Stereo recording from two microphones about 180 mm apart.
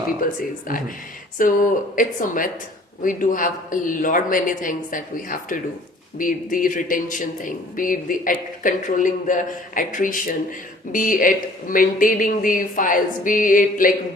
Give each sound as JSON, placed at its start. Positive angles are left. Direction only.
{"t": 0.2, "sound": "speech", "side_deg": 50}